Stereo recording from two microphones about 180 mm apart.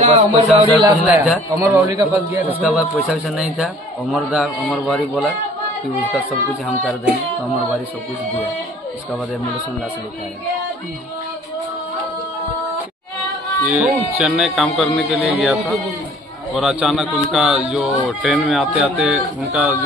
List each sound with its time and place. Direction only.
0.0 s speech: 35° right (ahead or behind)
1.0 s a man's voice: 10° right (ahead or behind)
2.6 s a man's voice: 5° right (ahead or behind)
13.7 s a man's voice: 5° right (ahead or behind)
16.5 s a man's voice: centre (ahead or behind)